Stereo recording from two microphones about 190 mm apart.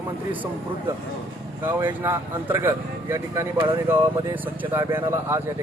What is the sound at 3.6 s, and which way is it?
Speech, 25° right (ahead or behind).